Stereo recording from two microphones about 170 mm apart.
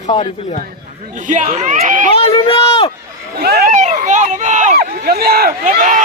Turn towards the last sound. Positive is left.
turn(degrees=-50)  # may be behind; listen again after turning